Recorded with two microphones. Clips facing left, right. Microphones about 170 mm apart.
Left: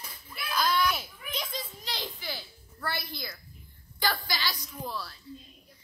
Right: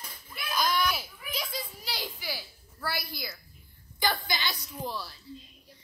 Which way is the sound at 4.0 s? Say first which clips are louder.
Right 1 dB; 20° right (ahead or behind).